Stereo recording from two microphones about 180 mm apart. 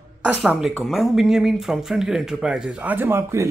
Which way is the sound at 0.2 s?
5° right (ahead or behind).